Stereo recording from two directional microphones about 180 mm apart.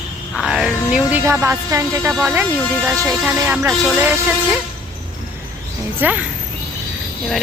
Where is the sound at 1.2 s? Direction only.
15° right (ahead or behind).